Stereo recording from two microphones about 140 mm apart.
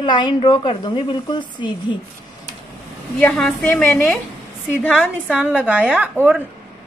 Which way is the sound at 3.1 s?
5° left (ahead or behind).